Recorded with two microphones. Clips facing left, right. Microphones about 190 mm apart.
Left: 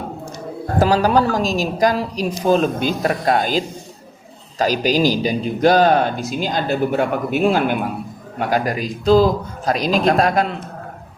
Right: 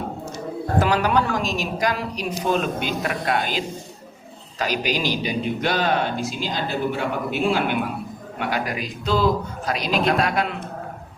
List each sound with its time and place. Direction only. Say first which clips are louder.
0.8 s a man's voice: left 5 dB; 35° left (ahead or behind)